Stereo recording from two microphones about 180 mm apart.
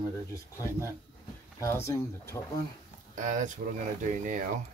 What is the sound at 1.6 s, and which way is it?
Speech, 15° left (ahead or behind).